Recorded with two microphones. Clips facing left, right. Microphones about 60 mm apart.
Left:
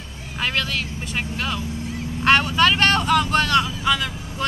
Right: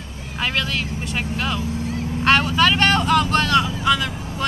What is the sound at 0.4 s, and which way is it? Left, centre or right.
Speech, centre.